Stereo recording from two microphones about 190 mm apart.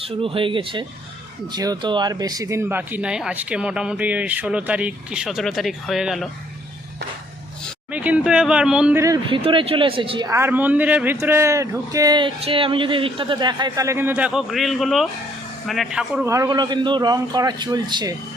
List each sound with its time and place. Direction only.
0.0 s a man's voice: 30° right (ahead or behind); by 6.2 s centre (ahead or behind)
7.9 s speech: 5° right (ahead or behind)
9.0 s speech: 15° right (ahead or behind)
9.4 s speech: 30° right (ahead or behind); by 16.2 s 5° right (ahead or behind)
16.2 s a man's voice: 15° right (ahead or behind)